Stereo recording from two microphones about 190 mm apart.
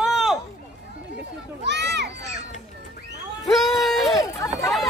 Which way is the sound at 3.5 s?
Centre (ahead or behind).